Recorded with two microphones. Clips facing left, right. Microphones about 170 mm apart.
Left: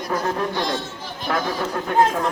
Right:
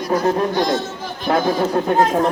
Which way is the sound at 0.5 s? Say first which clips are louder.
Right 6 dB; 45° right (ahead or behind).